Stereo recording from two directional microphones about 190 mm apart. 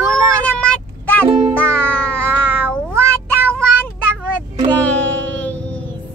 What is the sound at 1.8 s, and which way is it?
Music, 5° left (ahead or behind).